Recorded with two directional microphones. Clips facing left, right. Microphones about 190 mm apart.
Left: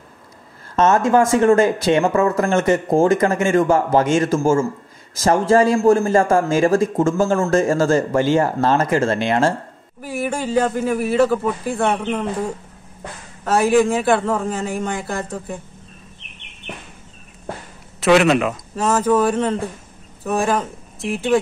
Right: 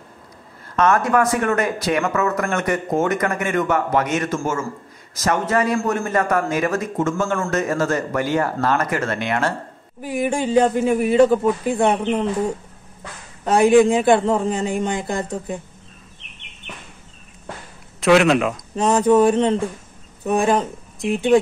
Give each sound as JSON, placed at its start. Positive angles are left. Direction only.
{"t": 0.7, "sound": "a man's voice", "side_deg": 25}
{"t": 10.0, "sound": "a man's voice", "side_deg": -20}
{"t": 13.4, "sound": "a man's voice", "side_deg": -20}
{"t": 18.0, "sound": "speech", "side_deg": 0}
{"t": 18.8, "sound": "a man's voice", "side_deg": -20}